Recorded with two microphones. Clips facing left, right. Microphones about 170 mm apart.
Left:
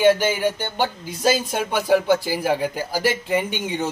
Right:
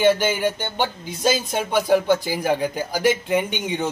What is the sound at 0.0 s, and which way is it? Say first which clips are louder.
Speech: left 1 dB; 5° left (ahead or behind).